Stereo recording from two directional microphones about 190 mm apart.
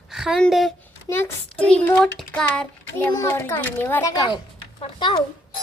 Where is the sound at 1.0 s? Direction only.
10° left (ahead or behind).